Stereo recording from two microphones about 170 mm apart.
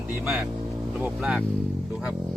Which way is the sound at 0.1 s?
10° right (ahead or behind).